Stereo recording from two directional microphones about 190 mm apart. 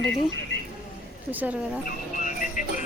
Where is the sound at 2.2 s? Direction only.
45° left (ahead or behind).